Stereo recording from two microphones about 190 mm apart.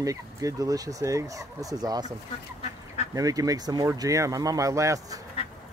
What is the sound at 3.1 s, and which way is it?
Speech, 20° right (ahead or behind).